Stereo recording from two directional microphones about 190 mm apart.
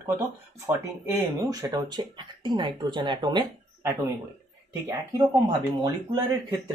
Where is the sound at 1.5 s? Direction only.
20° right (ahead or behind).